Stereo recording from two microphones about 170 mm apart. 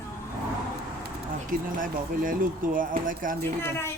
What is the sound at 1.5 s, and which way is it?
Speech, 50° right (ahead or behind).